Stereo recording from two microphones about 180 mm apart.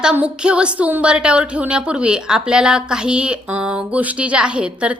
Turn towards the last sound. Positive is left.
turn(degrees=-5)  # may be behind; listen again after turning